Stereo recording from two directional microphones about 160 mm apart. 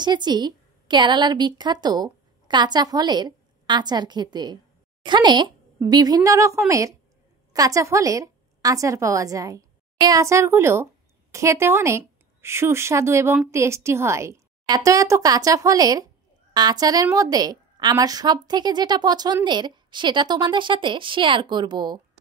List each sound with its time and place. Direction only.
0.0 s a woman's voice: 25° right (ahead or behind)